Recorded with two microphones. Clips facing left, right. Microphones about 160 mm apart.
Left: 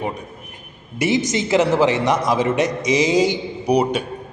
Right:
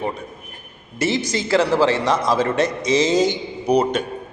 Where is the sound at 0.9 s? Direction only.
15° left (ahead or behind).